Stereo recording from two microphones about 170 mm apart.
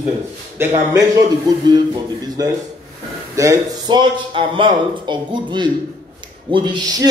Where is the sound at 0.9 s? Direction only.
20° right (ahead or behind).